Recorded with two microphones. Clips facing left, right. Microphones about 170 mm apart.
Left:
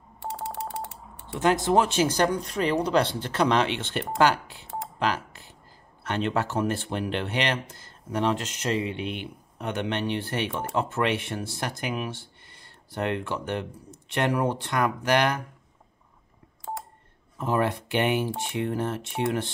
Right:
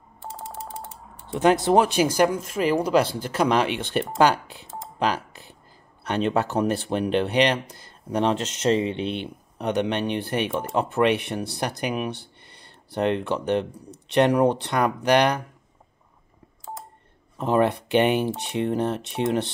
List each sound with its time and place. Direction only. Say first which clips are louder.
0.2 s typing: left 3 dB; 65° left (ahead or behind)
1.3 s speech: right 4 dB; 20° right (ahead or behind)
4.9 s telephone dialing: right 3 dB; 15° right (ahead or behind)
6.0 s speech: right 4 dB; 15° right (ahead or behind)
17.4 s speech: right 5 dB; 20° right (ahead or behind)